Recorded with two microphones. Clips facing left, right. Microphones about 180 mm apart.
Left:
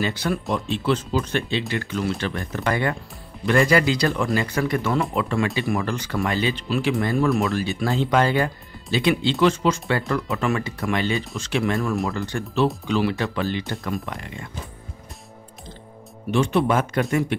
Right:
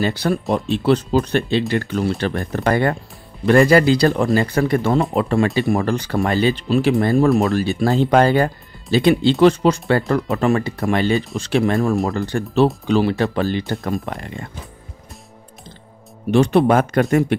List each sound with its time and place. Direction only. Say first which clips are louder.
0.0 s speech: right 5 dB; 35° right (ahead or behind)
16.7 s speech: right 6 dB; 60° right (ahead or behind)